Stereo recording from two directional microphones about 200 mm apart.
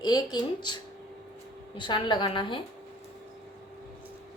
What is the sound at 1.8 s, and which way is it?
Speech, 25° left (ahead or behind).